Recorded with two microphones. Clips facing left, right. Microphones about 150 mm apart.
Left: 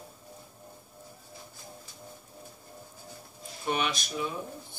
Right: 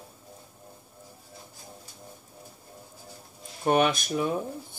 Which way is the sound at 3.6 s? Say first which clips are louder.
Right 8 dB; 50° right (ahead or behind).